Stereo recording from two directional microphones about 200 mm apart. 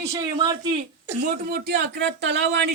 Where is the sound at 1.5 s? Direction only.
55° right (ahead or behind).